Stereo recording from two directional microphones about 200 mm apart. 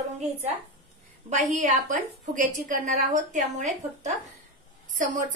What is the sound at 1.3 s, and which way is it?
A woman's voice, 40° right (ahead or behind).